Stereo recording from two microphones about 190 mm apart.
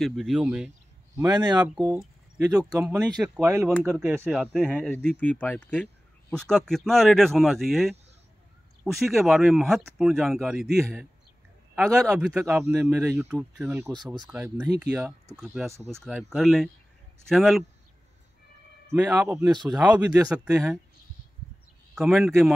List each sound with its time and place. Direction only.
0.0 s speech: centre (ahead or behind)
1.1 s speech: 20° right (ahead or behind)
4.3 s speech: centre (ahead or behind)
4.9 s speech: 5° left (ahead or behind)
18.9 s speech: 5° right (ahead or behind)
21.9 s speech: centre (ahead or behind)